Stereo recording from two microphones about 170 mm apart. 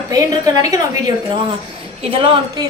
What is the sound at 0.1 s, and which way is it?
A woman's voice, 20° right (ahead or behind).